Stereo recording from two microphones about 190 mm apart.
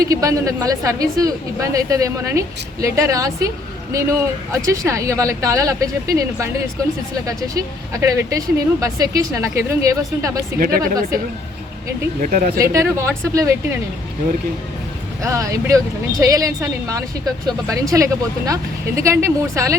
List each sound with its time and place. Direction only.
0.0 s a woman's voice: 15° right (ahead or behind)
7.3 s a woman's voice: 20° right (ahead or behind)
10.6 s speech: 50° right (ahead or behind)
12.2 s speech: 45° right (ahead or behind)
12.5 s a woman's voice: 15° right (ahead or behind)
15.2 s a woman's voice: 15° right (ahead or behind)